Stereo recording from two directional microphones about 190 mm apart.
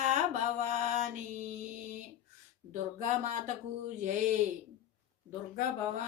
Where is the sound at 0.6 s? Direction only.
40° right (ahead or behind).